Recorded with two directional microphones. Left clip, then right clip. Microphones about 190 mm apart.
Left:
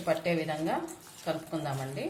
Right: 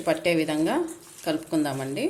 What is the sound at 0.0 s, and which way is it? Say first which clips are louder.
Speech: right 6 dB; 60° right (ahead or behind).